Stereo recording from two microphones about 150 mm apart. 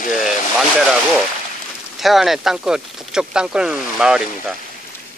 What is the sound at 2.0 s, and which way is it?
Speech, centre (ahead or behind).